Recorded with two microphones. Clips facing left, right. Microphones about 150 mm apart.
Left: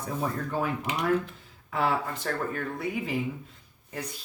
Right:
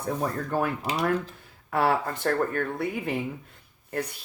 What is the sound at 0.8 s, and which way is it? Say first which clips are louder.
Speech: right 2 dB; 35° right (ahead or behind).